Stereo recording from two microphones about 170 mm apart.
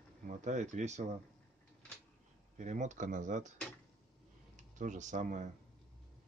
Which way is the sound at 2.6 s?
45° right (ahead or behind).